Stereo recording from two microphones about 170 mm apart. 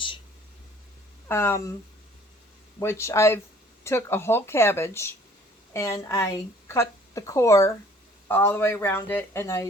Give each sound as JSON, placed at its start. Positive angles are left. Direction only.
{"t": 1.3, "sound": "speech", "side_deg": 15}
{"t": 2.7, "sound": "a woman's voice", "side_deg": 15}